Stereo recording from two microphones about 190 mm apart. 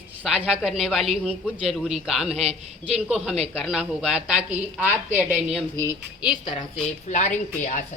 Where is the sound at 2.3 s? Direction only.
35° right (ahead or behind).